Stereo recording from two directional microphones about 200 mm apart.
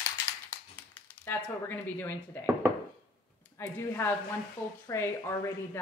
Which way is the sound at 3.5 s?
15° left (ahead or behind).